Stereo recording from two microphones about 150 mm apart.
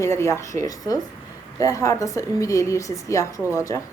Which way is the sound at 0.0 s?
20° left (ahead or behind).